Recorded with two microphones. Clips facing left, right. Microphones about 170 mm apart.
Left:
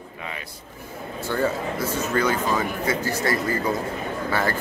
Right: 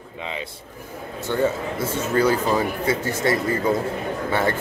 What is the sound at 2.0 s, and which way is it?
A man's voice, 30° right (ahead or behind).